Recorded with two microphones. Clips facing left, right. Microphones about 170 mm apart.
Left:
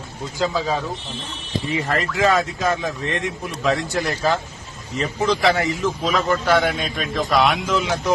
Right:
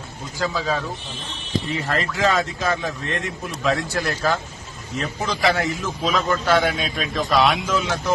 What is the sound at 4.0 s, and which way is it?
Speech, 15° left (ahead or behind).